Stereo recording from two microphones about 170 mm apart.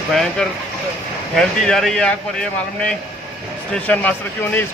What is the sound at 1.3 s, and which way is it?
Speech, 5° left (ahead or behind).